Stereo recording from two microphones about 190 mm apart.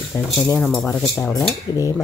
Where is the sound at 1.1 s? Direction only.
15° left (ahead or behind).